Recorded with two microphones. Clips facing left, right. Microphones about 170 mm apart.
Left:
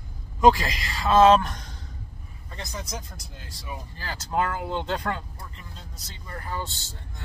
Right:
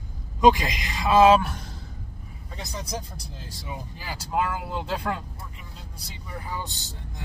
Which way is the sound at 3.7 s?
10° right (ahead or behind).